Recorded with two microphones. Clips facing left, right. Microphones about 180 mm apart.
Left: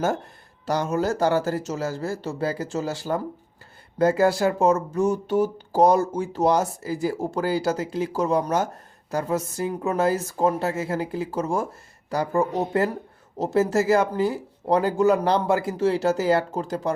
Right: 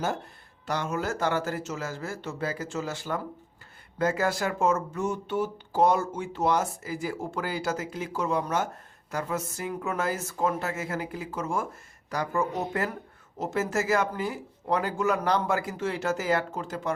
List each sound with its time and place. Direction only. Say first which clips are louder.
0.6 s speech: left 6 dB; 40° left (ahead or behind)